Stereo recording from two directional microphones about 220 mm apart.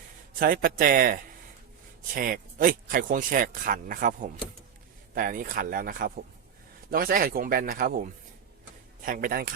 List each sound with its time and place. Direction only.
0.3 s speech: 40° right (ahead or behind)